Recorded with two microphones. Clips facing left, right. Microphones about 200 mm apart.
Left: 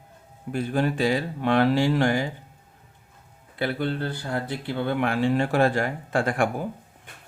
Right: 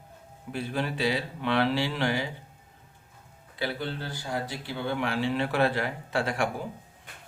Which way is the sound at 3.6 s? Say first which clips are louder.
Left 6 dB; 55° left (ahead or behind).